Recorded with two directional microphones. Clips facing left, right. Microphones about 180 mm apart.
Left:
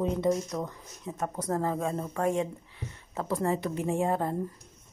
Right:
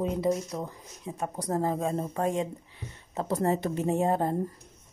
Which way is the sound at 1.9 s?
30° right (ahead or behind).